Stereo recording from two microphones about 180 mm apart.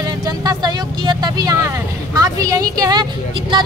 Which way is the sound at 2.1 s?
20° right (ahead or behind).